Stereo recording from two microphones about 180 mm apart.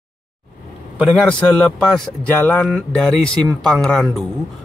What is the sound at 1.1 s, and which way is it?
A man's voice, 5° left (ahead or behind).